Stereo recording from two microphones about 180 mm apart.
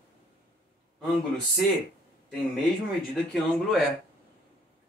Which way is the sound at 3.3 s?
Centre (ahead or behind).